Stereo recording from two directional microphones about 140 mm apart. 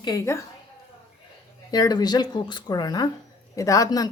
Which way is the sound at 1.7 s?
30° left (ahead or behind).